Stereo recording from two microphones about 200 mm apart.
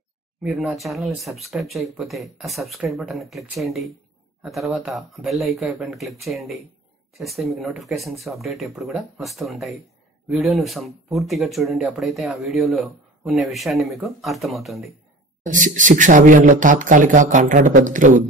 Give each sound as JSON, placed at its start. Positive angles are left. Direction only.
{"t": 0.4, "sound": "speech", "side_deg": -5}
{"t": 15.4, "sound": "a man's voice", "side_deg": -40}